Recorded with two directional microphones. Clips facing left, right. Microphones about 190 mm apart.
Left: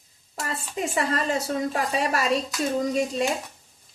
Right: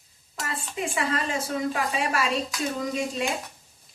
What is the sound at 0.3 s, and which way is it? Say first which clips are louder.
Speech: left 2 dB; 40° left (ahead or behind).